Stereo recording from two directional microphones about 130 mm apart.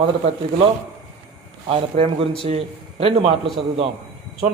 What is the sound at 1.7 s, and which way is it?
Speech, 50° right (ahead or behind).